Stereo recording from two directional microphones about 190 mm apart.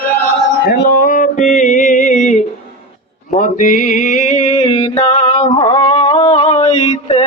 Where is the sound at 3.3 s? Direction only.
45° left (ahead or behind).